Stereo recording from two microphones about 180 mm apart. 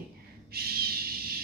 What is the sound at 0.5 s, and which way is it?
Speech, 60° right (ahead or behind).